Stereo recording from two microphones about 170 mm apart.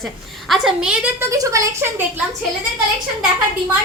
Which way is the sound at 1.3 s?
20° right (ahead or behind).